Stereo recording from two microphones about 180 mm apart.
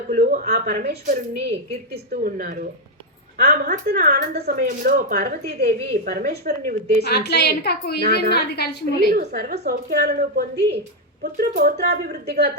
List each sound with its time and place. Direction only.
0.1 s speech: 50° right (ahead or behind)
2.2 s speech: 50° right (ahead or behind)
7.0 s a woman's voice: 65° left (ahead or behind)
9.1 s speech: 65° right (ahead or behind)